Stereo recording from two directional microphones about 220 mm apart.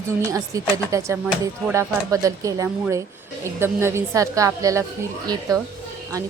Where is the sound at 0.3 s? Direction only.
15° right (ahead or behind).